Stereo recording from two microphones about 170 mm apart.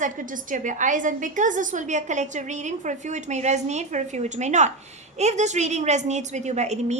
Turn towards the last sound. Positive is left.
turn(degrees=-40)  # may be behind; listen again after turning